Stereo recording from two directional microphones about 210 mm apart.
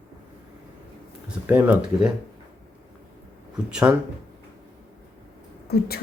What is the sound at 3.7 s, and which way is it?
Speech, 5° right (ahead or behind).